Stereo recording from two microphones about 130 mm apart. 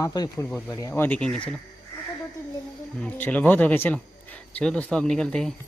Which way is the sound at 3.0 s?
10° left (ahead or behind).